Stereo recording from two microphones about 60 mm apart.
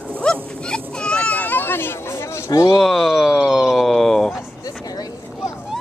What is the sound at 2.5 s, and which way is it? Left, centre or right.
Speech, left.